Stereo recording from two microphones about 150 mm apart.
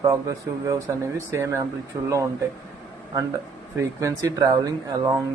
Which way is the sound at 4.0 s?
20° right (ahead or behind).